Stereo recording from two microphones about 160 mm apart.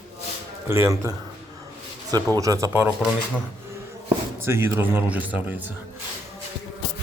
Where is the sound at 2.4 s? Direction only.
20° right (ahead or behind).